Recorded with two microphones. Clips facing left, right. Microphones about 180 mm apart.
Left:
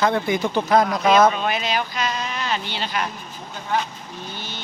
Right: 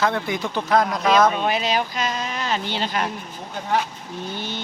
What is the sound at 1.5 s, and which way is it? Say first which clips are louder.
Speech: right 2 dB; 35° right (ahead or behind).